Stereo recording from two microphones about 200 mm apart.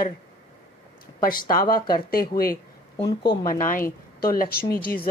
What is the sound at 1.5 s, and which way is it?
Speech, 45° left (ahead or behind).